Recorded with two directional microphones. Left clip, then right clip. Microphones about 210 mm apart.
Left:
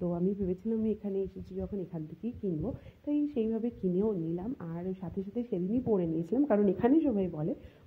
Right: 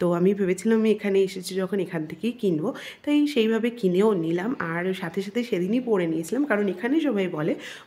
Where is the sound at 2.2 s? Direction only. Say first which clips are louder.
Right 10 dB; 45° right (ahead or behind).